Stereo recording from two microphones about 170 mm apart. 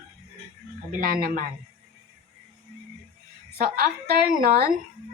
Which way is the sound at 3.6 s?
60° right (ahead or behind).